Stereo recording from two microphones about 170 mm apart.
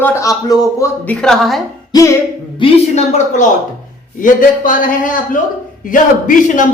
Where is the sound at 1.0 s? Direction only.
5° left (ahead or behind).